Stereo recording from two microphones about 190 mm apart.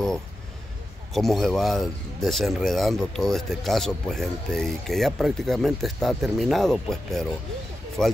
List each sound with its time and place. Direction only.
1.1 s speech: centre (ahead or behind)